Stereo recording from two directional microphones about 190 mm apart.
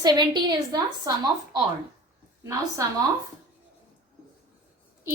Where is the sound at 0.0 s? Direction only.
20° right (ahead or behind).